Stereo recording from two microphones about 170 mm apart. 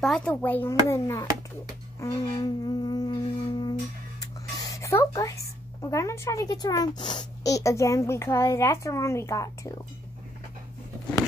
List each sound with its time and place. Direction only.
0.0 s a child's voice: 5° left (ahead or behind)
2.0 s music: 25° left (ahead or behind)
4.2 s a sound: 20° left (ahead or behind)
5.8 s a child's voice: 15° left (ahead or behind)